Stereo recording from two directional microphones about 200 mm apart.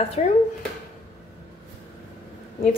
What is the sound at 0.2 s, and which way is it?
Speech, 35° left (ahead or behind).